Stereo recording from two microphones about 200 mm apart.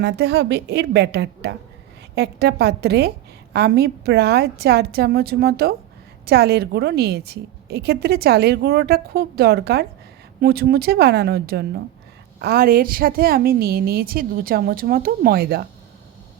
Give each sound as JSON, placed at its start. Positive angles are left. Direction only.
{"t": 0.0, "sound": "a woman's voice", "side_deg": -55}